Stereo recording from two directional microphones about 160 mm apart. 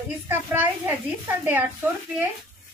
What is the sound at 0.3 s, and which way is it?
A child's voice, 10° right (ahead or behind).